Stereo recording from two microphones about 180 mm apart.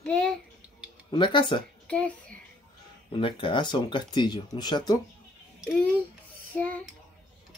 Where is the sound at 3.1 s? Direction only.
30° left (ahead or behind).